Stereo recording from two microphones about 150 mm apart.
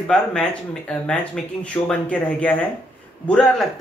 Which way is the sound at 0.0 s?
5° left (ahead or behind).